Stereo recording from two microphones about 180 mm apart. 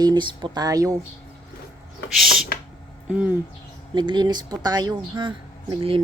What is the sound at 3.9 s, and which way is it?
Speech, 25° right (ahead or behind).